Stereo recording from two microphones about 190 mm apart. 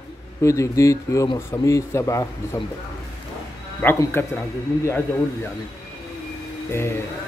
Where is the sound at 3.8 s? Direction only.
10° left (ahead or behind).